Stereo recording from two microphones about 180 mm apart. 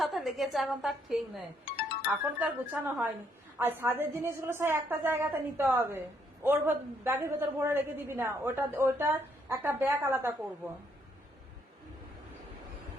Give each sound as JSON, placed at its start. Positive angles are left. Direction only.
{"t": 0.0, "sound": "a woman's voice", "side_deg": 0}